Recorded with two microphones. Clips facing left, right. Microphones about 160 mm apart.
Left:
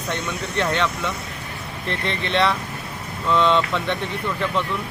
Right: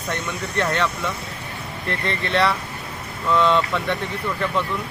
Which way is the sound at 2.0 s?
20° left (ahead or behind).